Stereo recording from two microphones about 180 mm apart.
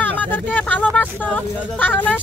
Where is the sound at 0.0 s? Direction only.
10° left (ahead or behind).